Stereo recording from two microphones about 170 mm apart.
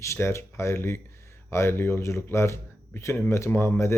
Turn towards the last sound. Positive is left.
turn(degrees=15)  # may be behind; listen again after turning